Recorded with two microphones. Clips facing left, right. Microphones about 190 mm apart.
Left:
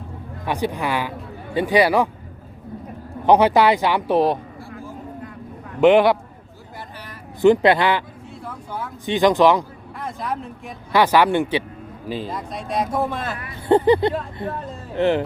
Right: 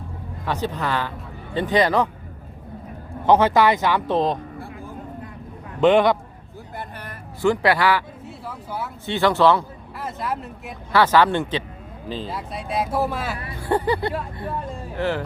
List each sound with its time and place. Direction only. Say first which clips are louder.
0.4 s speech: left 2 dB; 15° left (ahead or behind)
3.2 s speech: left 2 dB; 15° left (ahead or behind)
5.8 s speech: left 2 dB; 10° left (ahead or behind)
6.7 s vehicle: right 2 dB; 55° right (ahead or behind)
7.4 s a man's voice: left 4 dB; 20° left (ahead or behind)
8.3 s a sound: even; 5° right (ahead or behind)
9.0 s speech: left 2 dB; 15° left (ahead or behind)
10.0 s speech: even; 5° right (ahead or behind)
10.9 s speech: left 1 dB; 15° left (ahead or behind)
12.3 s speech: left 1 dB; 5° right (ahead or behind)
13.6 s a man's voice: left 7 dB; 20° left (ahead or behind)